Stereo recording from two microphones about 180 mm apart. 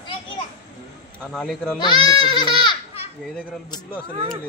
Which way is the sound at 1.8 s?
25° left (ahead or behind).